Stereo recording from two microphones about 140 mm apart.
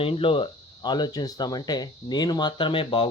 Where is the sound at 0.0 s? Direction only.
40° left (ahead or behind).